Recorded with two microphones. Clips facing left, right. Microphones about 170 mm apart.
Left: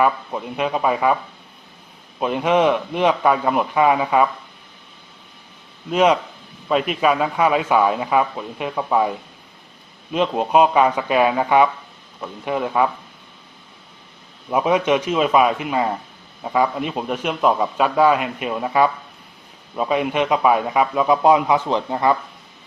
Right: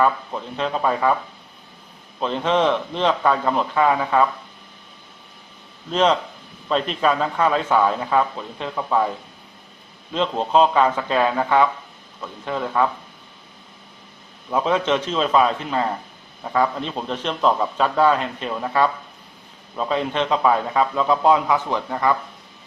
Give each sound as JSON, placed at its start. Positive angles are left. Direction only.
{"t": 0.0, "sound": "a man's voice", "side_deg": 10}
{"t": 5.9, "sound": "a man's voice", "side_deg": 10}
{"t": 14.5, "sound": "a man's voice", "side_deg": 15}